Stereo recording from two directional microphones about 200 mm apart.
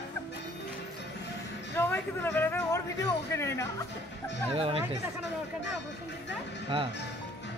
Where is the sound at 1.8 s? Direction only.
10° left (ahead or behind).